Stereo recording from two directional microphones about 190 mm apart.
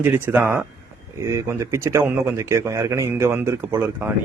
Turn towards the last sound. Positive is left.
turn(degrees=-10)  # may be behind; listen again after turning